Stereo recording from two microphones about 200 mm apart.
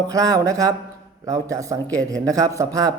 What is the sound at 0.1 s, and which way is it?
Speech, 15° right (ahead or behind).